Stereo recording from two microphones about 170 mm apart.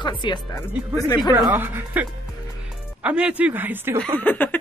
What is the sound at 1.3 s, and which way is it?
Speech, 10° right (ahead or behind).